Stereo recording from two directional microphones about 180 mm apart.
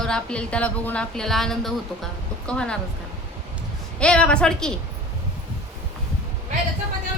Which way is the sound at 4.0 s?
5° left (ahead or behind).